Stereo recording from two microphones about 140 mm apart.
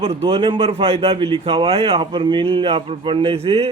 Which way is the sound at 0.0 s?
40° right (ahead or behind).